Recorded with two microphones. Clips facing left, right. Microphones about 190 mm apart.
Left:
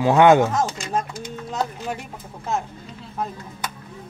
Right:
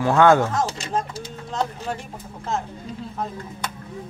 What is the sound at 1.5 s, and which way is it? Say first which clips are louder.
Speech: right 1 dB; 5° left (ahead or behind).